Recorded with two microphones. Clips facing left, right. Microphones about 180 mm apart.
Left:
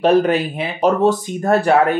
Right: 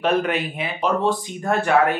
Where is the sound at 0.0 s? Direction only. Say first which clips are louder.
Left 7 dB; 35° left (ahead or behind).